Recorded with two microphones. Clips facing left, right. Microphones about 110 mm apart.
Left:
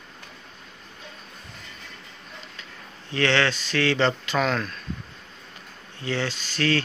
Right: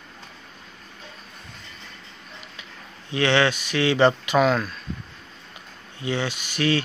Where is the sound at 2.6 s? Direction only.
15° right (ahead or behind).